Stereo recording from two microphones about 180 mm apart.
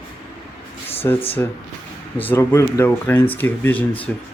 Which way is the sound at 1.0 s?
15° left (ahead or behind).